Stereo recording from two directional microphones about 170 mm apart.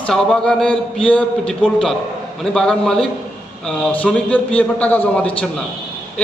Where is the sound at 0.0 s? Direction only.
5° left (ahead or behind).